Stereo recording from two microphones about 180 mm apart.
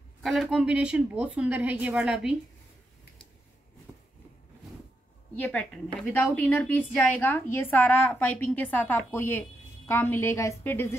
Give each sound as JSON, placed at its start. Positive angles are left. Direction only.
{"t": 0.2, "sound": "a woman's voice", "side_deg": 0}
{"t": 5.3, "sound": "speech", "side_deg": 10}